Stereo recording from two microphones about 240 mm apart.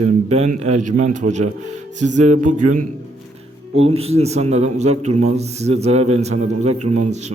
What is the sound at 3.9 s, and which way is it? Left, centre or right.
A man's voice, right.